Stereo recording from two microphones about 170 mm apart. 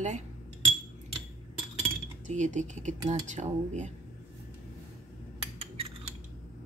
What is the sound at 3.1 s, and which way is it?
Speech, 45° right (ahead or behind).